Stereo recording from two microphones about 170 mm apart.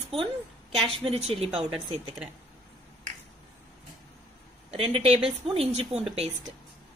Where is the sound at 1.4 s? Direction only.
Centre (ahead or behind).